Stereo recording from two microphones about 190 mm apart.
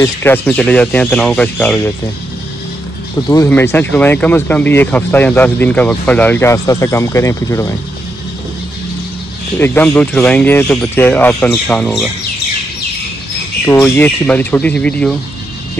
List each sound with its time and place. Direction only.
0.0 s speech: 10° left (ahead or behind)
3.3 s speech: 15° left (ahead or behind)
9.6 s speech: 5° left (ahead or behind)
13.7 s speech: 10° left (ahead or behind)